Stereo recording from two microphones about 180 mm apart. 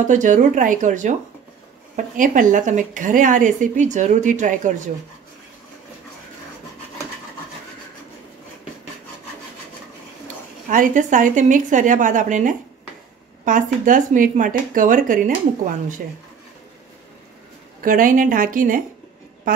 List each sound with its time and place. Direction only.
0.0 s speech: 45° right (ahead or behind)
2.1 s speech: 45° right (ahead or behind)
10.2 s speech: 45° right (ahead or behind)
17.8 s speech: 50° right (ahead or behind)